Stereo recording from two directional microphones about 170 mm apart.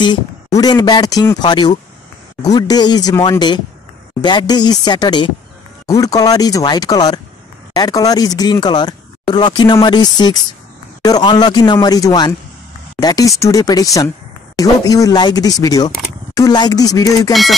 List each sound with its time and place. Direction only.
0.0 s speech: 25° left (ahead or behind)
17.3 s speech: centre (ahead or behind)